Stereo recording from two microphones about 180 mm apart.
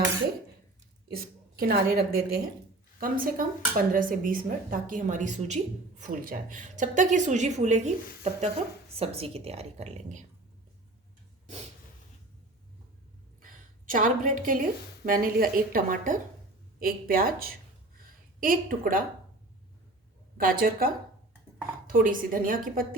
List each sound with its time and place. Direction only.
1.1 s a woman's voice: 60° right (ahead or behind); by 10.2 s 40° right (ahead or behind)
13.4 s a woman's voice: 50° right (ahead or behind)
17.9 s a sound: 50° right (ahead or behind)
20.4 s speech: 50° right (ahead or behind)